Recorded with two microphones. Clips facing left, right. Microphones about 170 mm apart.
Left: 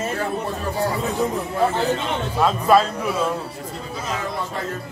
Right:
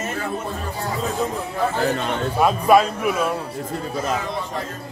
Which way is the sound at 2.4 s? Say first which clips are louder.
Right 1 dB; 10° right (ahead or behind).